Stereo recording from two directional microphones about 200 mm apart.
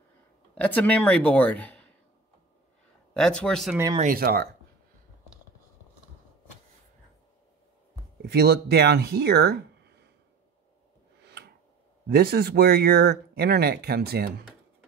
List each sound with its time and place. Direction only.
0.6 s speech: 5° left (ahead or behind)
3.2 s speech: 5° left (ahead or behind)
4.0 s speech: 45° right (ahead or behind)
8.2 s speech: 55° right (ahead or behind)
11.2 s tick-tock: 55° right (ahead or behind)
12.1 s speech: 50° right (ahead or behind)